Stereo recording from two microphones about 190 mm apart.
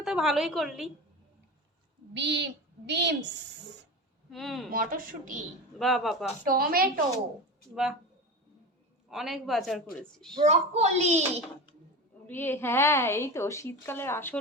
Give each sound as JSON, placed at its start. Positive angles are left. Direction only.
{"t": 0.0, "sound": "a woman's voice", "side_deg": 0}
{"t": 2.1, "sound": "a woman's voice", "side_deg": -65}
{"t": 4.3, "sound": "a woman's voice", "side_deg": 0}
{"t": 4.7, "sound": "speech", "side_deg": -45}
{"t": 5.8, "sound": "a woman's voice", "side_deg": 0}
{"t": 6.4, "sound": "speech", "side_deg": -50}
{"t": 9.0, "sound": "a woman's voice", "side_deg": 0}
{"t": 10.3, "sound": "speech", "side_deg": -35}
{"t": 12.3, "sound": "a woman's voice", "side_deg": 10}